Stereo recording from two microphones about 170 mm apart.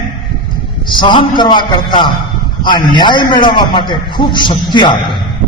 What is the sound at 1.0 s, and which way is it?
A man's voice, 25° left (ahead or behind).